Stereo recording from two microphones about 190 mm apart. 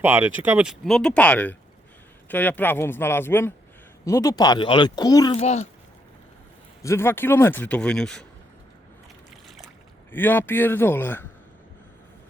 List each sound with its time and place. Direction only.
0.0 s speech: 10° right (ahead or behind); by 5.4 s 20° left (ahead or behind)
5.4 s a child's voice: 35° left (ahead or behind)
6.8 s speech: 15° left (ahead or behind)
10.1 s speech: 10° left (ahead or behind)